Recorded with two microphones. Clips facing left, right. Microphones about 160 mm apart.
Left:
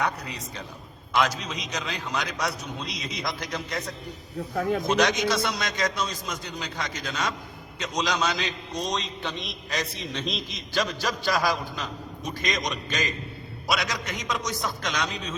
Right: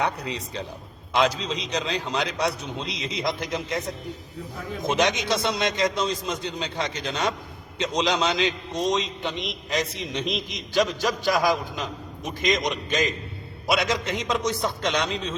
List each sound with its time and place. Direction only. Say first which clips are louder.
0.0 s a man's voice: right 2 dB; 30° right (ahead or behind)
4.9 s a man's voice: right 4 dB; 20° right (ahead or behind)